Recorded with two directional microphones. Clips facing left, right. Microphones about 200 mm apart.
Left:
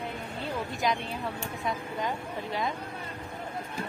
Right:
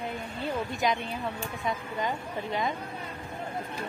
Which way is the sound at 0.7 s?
Centre (ahead or behind).